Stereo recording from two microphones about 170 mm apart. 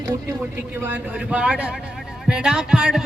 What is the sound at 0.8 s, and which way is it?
Speech, 10° right (ahead or behind).